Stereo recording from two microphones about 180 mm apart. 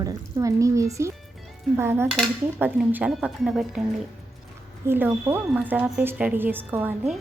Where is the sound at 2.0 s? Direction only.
Centre (ahead or behind).